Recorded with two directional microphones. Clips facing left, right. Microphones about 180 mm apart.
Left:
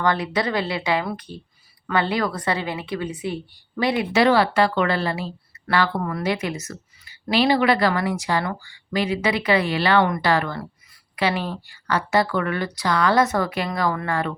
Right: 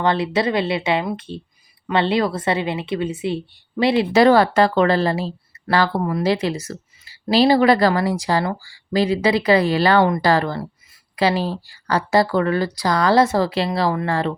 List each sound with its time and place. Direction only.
0.0 s a woman's voice: 25° right (ahead or behind)
4.1 s a woman's voice: 40° right (ahead or behind)
6.0 s a woman's voice: 25° right (ahead or behind)